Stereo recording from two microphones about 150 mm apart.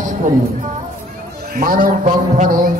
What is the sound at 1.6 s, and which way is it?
A man's voice, 70° right (ahead or behind).